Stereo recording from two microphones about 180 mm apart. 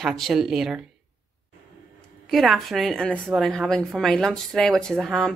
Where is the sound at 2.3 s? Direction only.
Centre (ahead or behind).